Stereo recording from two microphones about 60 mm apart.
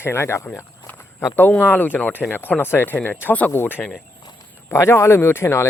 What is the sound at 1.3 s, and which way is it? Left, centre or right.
Speech, left.